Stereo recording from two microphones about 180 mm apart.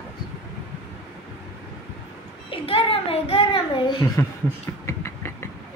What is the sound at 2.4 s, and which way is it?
A child's voice, 30° left (ahead or behind).